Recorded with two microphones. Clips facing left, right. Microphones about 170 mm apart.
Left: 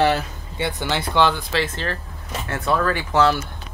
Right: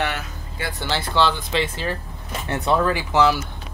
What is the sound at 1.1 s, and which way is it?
Speech, 15° left (ahead or behind).